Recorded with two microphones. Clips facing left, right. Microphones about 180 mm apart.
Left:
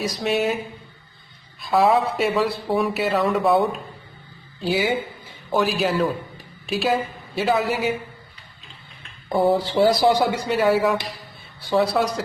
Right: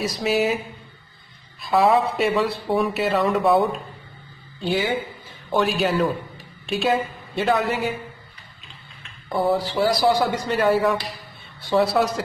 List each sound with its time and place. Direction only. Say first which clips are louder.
0.2 s a man's voice: right 1 dB; centre (ahead or behind)
1.6 s a man's voice: even; centre (ahead or behind)
9.5 s speech: left 2 dB; 25° left (ahead or behind)
10.2 s a man's voice: left 1 dB; centre (ahead or behind)